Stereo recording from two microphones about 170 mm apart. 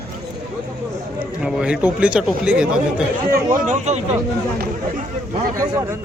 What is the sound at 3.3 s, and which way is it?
Speech, 50° right (ahead or behind).